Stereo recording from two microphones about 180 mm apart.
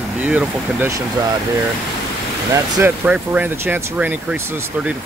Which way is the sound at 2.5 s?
10° right (ahead or behind).